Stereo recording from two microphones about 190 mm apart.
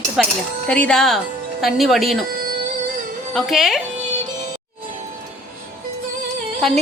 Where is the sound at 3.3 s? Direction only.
Centre (ahead or behind).